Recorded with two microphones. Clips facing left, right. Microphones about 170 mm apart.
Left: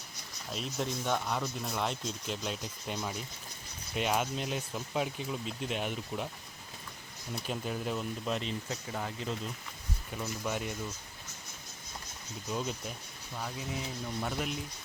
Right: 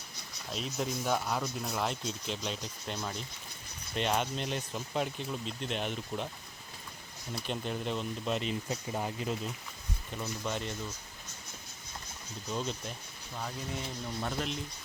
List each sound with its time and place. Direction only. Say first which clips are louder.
0.5 s speech: even; centre (ahead or behind)
7.4 s speech: even; 5° left (ahead or behind)
8.7 s speech: right 3 dB; 15° right (ahead or behind)
10.2 s speech: left 1 dB; 10° left (ahead or behind)
12.5 s speech: even; 5° left (ahead or behind)